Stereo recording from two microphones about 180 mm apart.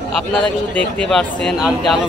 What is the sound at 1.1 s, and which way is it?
Speech, centre (ahead or behind).